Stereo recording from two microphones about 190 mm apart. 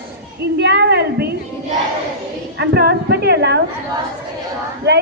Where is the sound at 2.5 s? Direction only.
60° right (ahead or behind).